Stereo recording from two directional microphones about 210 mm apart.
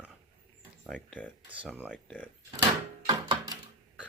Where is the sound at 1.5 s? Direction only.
5° right (ahead or behind).